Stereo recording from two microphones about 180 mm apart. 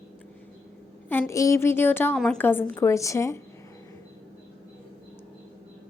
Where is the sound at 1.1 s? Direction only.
15° left (ahead or behind).